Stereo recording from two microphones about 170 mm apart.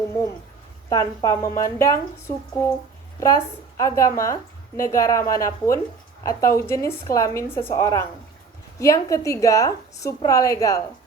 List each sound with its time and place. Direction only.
0.9 s a woman's voice: 20° left (ahead or behind)
3.8 s a woman's voice: 20° left (ahead or behind)